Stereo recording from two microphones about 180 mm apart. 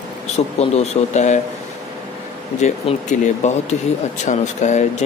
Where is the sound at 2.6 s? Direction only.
40° left (ahead or behind).